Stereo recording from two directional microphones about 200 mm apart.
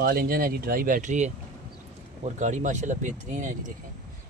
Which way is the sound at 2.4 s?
35° right (ahead or behind).